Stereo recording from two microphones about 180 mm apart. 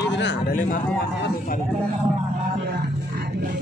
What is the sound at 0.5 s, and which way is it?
Speech, 50° left (ahead or behind).